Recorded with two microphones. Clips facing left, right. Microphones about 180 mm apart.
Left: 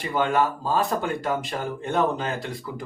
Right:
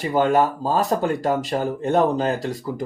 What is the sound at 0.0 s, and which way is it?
Speech, 40° right (ahead or behind).